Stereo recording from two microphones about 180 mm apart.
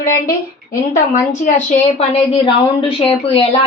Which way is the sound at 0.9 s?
45° left (ahead or behind).